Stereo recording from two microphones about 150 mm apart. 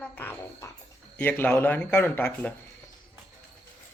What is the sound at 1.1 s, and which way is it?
Speech, 10° left (ahead or behind).